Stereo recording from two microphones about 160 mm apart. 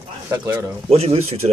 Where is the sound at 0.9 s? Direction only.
40° right (ahead or behind).